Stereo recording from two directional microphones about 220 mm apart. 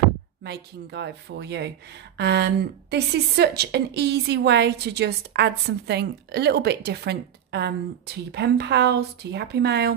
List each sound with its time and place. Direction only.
0.4 s a woman's voice: 50° right (ahead or behind)